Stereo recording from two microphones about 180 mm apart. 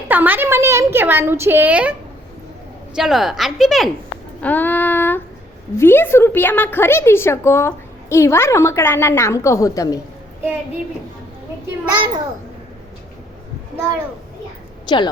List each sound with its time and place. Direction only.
0.1 s a woman's voice: 10° right (ahead or behind)
2.9 s a woman's voice: centre (ahead or behind)
4.4 s a woman's voice: 10° left (ahead or behind)
11.9 s a child's voice: 25° right (ahead or behind)
14.9 s a woman's voice: 25° left (ahead or behind)